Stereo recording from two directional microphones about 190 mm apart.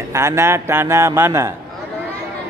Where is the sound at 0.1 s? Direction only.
15° right (ahead or behind).